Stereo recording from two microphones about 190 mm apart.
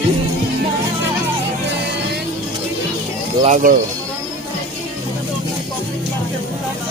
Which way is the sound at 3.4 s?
40° right (ahead or behind).